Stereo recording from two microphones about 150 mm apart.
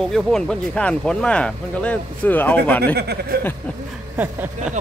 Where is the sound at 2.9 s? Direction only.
90° right.